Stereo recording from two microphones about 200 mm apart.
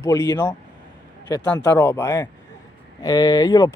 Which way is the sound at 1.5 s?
10° left (ahead or behind).